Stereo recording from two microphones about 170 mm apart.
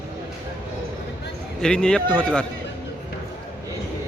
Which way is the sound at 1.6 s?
5° left (ahead or behind).